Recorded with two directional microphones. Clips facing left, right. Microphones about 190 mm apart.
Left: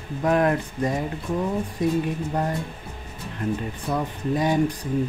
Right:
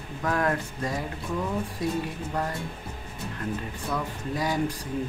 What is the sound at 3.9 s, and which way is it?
Speech, 25° left (ahead or behind).